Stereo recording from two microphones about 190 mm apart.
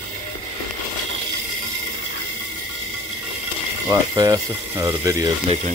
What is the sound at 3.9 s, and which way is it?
Speech, 20° right (ahead or behind).